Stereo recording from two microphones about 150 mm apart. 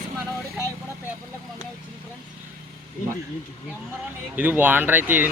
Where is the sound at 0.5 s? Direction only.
15° right (ahead or behind).